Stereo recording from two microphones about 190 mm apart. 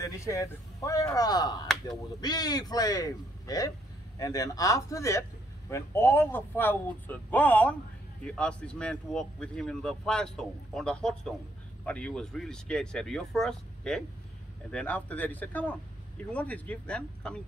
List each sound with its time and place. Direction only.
0.0 s a man's voice: 15° left (ahead or behind)